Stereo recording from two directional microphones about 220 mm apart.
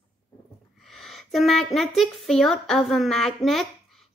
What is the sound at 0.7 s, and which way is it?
Speech, centre (ahead or behind).